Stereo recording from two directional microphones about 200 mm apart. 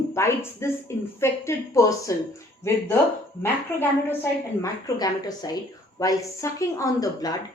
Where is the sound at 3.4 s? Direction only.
10° left (ahead or behind).